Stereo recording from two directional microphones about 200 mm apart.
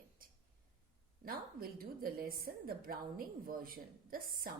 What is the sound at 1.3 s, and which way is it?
A woman's voice, 50° right (ahead or behind).